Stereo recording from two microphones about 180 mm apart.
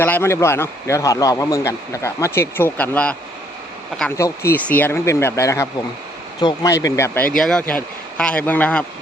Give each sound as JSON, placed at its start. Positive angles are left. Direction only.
{"t": 0.0, "sound": "a man's voice", "side_deg": 15}
{"t": 4.2, "sound": "a man's voice", "side_deg": 10}